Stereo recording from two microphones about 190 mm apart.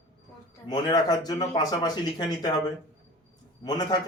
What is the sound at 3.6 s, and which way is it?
Speech, 20° left (ahead or behind).